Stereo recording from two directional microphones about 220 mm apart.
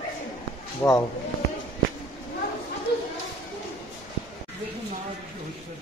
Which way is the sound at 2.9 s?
45° left (ahead or behind).